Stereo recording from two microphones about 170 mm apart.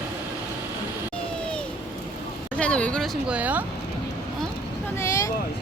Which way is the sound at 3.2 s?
10° right (ahead or behind).